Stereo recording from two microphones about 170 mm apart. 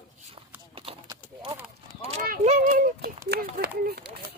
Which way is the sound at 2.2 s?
50° right (ahead or behind).